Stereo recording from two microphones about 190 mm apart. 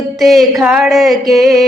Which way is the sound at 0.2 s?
Centre (ahead or behind).